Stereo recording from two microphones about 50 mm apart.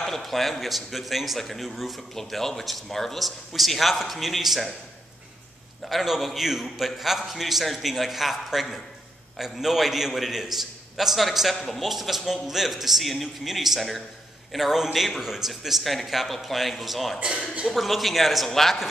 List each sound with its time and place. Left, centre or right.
0.0 s a man's voice: centre
5.9 s a man's voice: centre
17.2 s a man's voice: right
17.6 s a man's voice: centre